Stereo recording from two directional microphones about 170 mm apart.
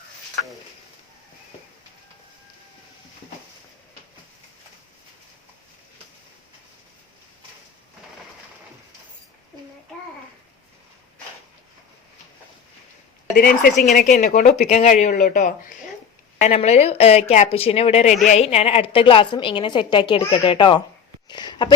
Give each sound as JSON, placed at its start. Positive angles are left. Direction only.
{"t": 13.3, "sound": "a woman's voice", "side_deg": 55}
{"t": 14.7, "sound": "speech", "side_deg": 40}
{"t": 16.4, "sound": "a woman's voice", "side_deg": 40}
{"t": 21.2, "sound": "a sound", "side_deg": 25}